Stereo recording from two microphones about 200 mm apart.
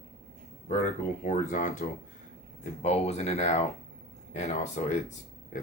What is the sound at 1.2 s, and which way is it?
Speech, 40° left (ahead or behind).